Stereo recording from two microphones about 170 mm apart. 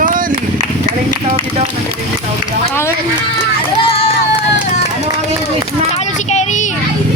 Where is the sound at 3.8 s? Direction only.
35° left (ahead or behind).